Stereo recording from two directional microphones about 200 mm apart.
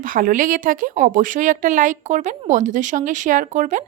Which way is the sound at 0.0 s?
40° right (ahead or behind).